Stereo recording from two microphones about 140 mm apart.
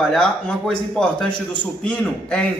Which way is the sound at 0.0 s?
Centre (ahead or behind).